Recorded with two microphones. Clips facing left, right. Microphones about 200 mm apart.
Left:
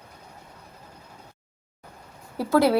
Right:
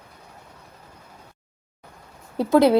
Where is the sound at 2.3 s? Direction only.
20° right (ahead or behind).